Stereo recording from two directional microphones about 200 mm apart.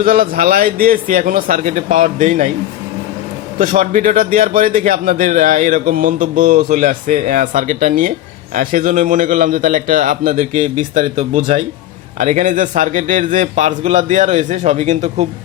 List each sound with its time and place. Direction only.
0.0 s a man's voice: 45° right (ahead or behind)
3.6 s a man's voice: 40° right (ahead or behind)